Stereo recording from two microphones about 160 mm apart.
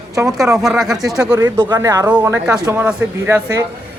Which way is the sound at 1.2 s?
20° right (ahead or behind).